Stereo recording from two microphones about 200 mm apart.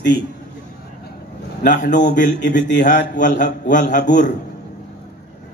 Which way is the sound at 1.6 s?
40° left (ahead or behind).